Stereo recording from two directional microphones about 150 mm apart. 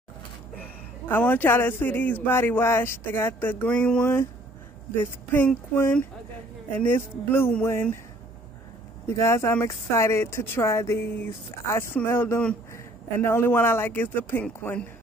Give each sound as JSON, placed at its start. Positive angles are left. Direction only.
{"t": 1.1, "sound": "speech", "side_deg": 15}
{"t": 9.1, "sound": "speech", "side_deg": 20}